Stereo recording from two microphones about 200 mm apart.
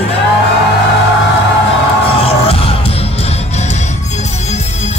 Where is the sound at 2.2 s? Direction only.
30° left (ahead or behind).